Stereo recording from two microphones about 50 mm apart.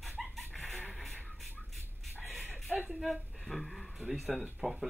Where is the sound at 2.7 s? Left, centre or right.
Right.